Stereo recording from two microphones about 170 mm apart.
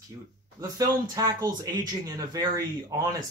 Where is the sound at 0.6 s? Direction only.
20° right (ahead or behind).